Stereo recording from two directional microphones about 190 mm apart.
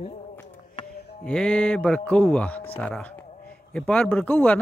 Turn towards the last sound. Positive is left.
turn(degrees=10)  # may be behind; listen again after turning